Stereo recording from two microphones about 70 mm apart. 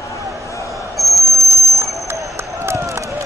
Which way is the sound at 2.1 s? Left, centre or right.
Right.